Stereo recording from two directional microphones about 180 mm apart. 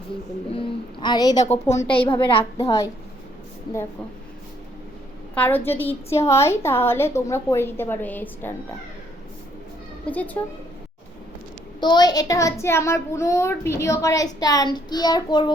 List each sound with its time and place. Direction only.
0.5 s a sound: 30° left (ahead or behind)
1.6 s a woman's voice: 15° left (ahead or behind)
1.9 s a woman's voice: 30° left (ahead or behind)
2.6 s a woman's voice: 20° left (ahead or behind)
5.3 s a woman's voice: 10° left (ahead or behind)
10.1 s a woman's voice: 10° left (ahead or behind)
11.8 s a woman's voice: 25° left (ahead or behind)